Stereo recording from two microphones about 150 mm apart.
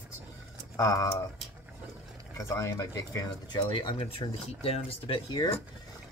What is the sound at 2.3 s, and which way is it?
Speech, 20° left (ahead or behind).